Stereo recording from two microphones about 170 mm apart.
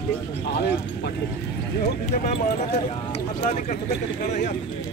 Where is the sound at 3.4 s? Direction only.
40° left (ahead or behind).